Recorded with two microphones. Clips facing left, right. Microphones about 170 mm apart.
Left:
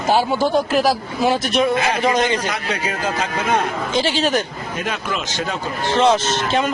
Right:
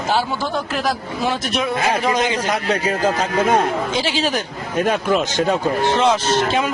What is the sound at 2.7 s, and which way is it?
Speech, 40° right (ahead or behind).